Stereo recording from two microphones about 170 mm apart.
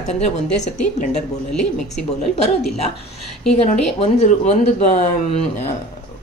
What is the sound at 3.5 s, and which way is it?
Speech, 40° left (ahead or behind).